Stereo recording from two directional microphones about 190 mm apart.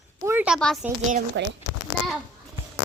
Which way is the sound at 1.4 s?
65° right (ahead or behind).